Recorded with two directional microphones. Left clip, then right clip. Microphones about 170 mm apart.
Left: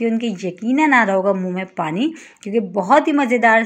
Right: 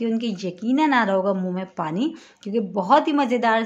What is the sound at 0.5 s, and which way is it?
Speech, 10° left (ahead or behind).